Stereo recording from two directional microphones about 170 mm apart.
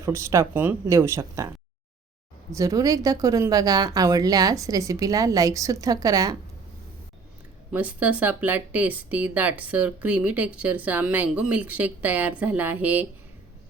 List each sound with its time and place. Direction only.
0.0 s speech: 15° right (ahead or behind)
2.5 s a woman's voice: 20° right (ahead or behind)
7.7 s speech: 10° right (ahead or behind)